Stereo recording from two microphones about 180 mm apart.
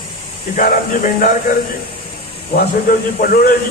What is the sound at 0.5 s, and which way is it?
Speech, 50° left (ahead or behind).